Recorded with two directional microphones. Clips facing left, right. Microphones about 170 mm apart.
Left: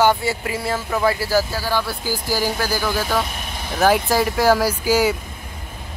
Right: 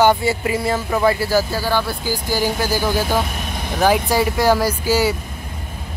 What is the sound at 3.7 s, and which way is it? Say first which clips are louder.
Speech: even; centre (ahead or behind).